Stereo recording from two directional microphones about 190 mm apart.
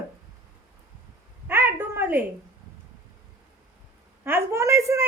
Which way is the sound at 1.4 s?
10° right (ahead or behind).